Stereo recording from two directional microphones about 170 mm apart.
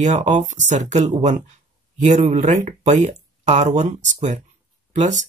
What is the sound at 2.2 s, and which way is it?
Speech, 40° right (ahead or behind).